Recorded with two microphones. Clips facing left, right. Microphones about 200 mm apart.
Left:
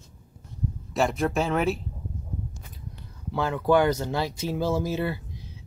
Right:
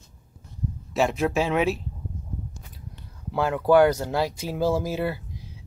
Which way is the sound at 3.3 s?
10° right (ahead or behind).